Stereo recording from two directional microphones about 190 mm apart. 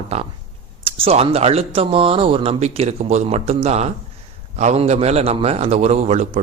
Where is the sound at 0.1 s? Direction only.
30° right (ahead or behind).